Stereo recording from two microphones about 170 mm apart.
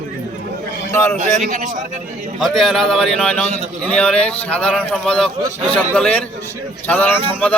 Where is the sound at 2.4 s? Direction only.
Centre (ahead or behind).